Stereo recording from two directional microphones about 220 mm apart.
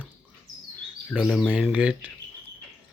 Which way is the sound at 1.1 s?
Centre (ahead or behind).